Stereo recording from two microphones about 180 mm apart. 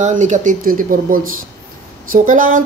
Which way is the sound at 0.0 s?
45° right (ahead or behind).